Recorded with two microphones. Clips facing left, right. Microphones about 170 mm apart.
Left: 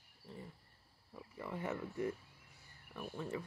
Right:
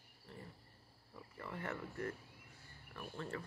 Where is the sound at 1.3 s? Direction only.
15° left (ahead or behind).